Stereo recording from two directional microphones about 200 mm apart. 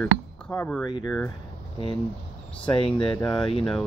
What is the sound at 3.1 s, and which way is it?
Speech, 20° left (ahead or behind).